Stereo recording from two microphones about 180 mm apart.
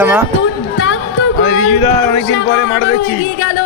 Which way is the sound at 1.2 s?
80° left.